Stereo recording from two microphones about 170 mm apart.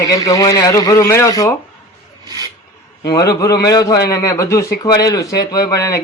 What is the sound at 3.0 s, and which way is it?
A man's voice, 20° left (ahead or behind).